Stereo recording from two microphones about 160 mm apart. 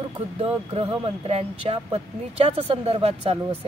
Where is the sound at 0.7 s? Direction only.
35° right (ahead or behind).